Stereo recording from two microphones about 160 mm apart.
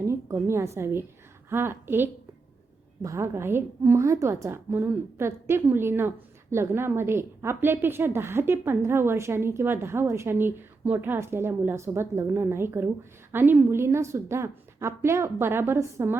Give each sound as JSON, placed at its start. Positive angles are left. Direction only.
{"t": 0.1, "sound": "a woman's voice", "side_deg": -15}